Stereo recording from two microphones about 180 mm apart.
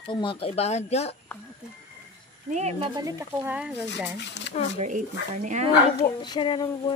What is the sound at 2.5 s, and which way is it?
Speech, 35° right (ahead or behind).